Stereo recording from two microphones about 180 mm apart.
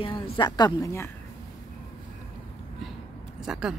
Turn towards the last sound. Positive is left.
turn(degrees=-5)  # may be behind; listen again after turning